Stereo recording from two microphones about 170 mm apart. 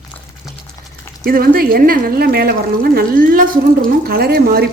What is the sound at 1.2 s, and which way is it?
A woman's voice, 60° right (ahead or behind).